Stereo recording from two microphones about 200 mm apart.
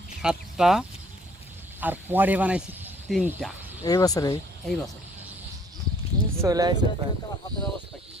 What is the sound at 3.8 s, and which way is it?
Speech, 15° left (ahead or behind).